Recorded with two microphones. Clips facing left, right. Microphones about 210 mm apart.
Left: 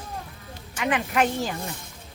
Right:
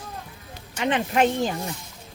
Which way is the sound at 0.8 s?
30° right (ahead or behind).